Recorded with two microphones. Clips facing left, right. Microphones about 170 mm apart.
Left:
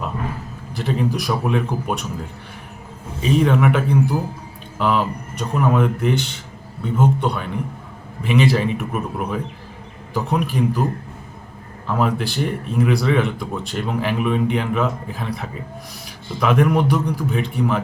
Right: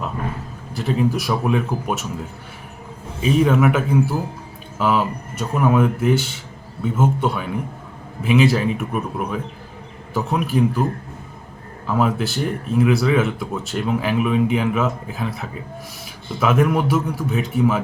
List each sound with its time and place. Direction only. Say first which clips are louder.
0.8 s speech: right 2 dB; centre (ahead or behind)
3.2 s speech: right 1 dB; 5° right (ahead or behind)
11.9 s speech: right 1 dB; centre (ahead or behind)